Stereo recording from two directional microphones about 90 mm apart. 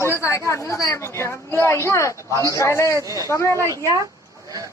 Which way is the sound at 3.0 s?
40° right (ahead or behind).